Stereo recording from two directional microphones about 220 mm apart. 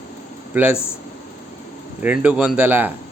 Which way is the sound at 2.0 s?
5° right (ahead or behind).